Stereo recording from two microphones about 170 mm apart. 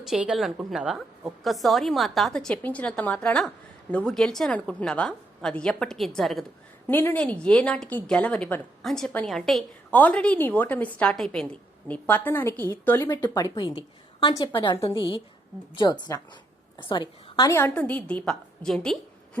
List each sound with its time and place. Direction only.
0.0 s a woman's voice: 5° right (ahead or behind)
6.8 s a woman's voice: 10° left (ahead or behind)